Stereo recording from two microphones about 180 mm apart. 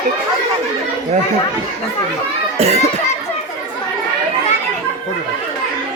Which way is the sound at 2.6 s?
35° right (ahead or behind).